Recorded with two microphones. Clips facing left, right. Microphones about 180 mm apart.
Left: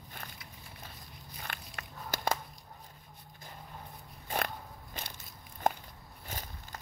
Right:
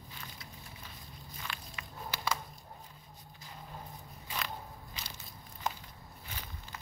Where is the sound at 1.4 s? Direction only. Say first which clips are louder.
Left 1 dB; 50° left (ahead or behind).